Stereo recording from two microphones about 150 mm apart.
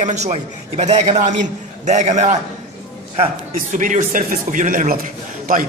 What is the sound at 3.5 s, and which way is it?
A man's voice, 60° right (ahead or behind).